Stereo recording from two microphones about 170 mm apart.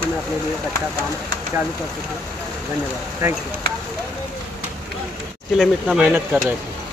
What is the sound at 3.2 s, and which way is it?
Speech, 15° right (ahead or behind).